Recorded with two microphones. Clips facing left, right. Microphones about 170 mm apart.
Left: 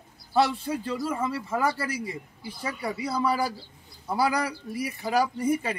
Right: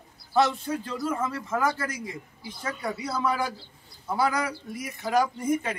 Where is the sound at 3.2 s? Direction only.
35° left (ahead or behind).